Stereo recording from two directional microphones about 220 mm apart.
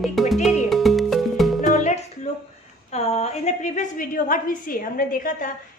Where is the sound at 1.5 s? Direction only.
35° left (ahead or behind).